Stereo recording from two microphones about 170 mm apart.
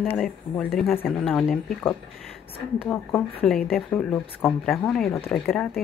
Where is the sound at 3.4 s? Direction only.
5° left (ahead or behind).